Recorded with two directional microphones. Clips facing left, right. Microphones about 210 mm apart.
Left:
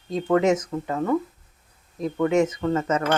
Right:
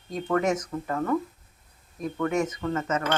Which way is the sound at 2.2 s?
25° left (ahead or behind).